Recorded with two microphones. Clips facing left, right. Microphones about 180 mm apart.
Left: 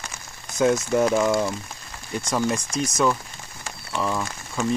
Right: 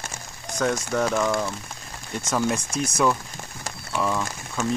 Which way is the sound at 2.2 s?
Centre (ahead or behind).